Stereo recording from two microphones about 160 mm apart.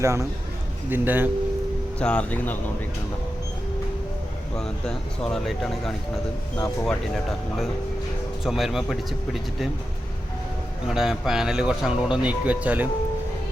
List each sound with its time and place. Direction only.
0.0 s a man's voice: 20° right (ahead or behind)
2.0 s speech: 5° left (ahead or behind)
4.5 s speech: 5° left (ahead or behind)
8.4 s speech: centre (ahead or behind)
10.8 s speech: 5° right (ahead or behind)